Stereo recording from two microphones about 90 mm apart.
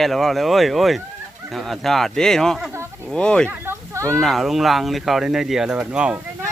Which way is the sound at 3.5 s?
30° right (ahead or behind).